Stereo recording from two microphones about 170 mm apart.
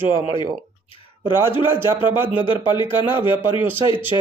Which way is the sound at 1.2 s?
15° right (ahead or behind).